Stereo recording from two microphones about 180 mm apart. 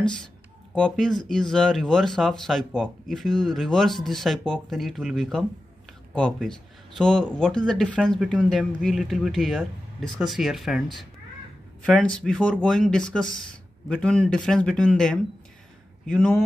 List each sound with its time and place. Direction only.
0.7 s speech: 5° left (ahead or behind)